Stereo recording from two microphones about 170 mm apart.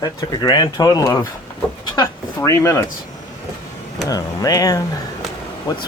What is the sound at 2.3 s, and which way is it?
Speech, 15° left (ahead or behind).